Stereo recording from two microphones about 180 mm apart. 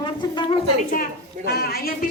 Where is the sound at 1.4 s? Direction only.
60° left (ahead or behind).